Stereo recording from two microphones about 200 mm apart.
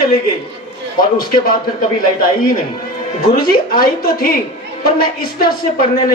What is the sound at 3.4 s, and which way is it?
Speech, 50° left (ahead or behind).